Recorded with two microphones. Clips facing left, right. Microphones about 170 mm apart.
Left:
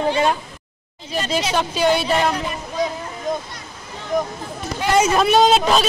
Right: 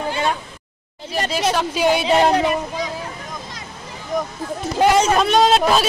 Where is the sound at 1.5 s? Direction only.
5° right (ahead or behind).